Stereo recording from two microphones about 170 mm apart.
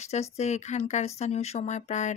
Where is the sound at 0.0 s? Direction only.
40° left (ahead or behind).